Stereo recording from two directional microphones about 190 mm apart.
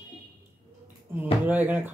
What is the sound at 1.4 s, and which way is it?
Speech, 10° right (ahead or behind).